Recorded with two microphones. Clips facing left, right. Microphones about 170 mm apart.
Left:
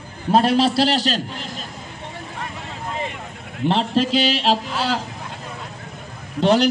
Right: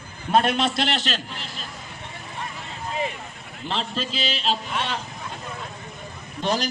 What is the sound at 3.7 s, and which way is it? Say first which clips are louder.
Speech: left 10 dB; 70° left (ahead or behind).